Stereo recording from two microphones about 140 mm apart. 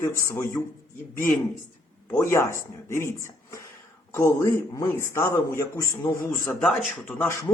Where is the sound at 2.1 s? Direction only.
20° left (ahead or behind).